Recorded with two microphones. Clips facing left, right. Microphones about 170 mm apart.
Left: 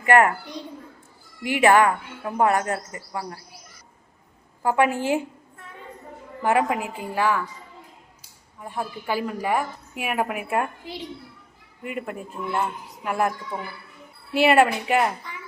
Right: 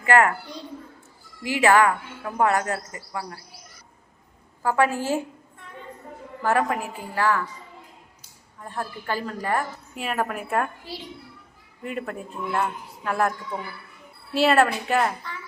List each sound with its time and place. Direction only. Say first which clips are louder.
0.0 s speech: left 2 dB; 20° left (ahead or behind)
1.5 s speech: left 1 dB; 20° left (ahead or behind)
4.6 s a woman's voice: left 1 dB; 20° left (ahead or behind)
6.4 s a woman's voice: left 1 dB; 15° left (ahead or behind)
8.5 s a woman's voice: left 2 dB; 10° left (ahead or behind)
13.5 s a woman's voice: even; 20° left (ahead or behind)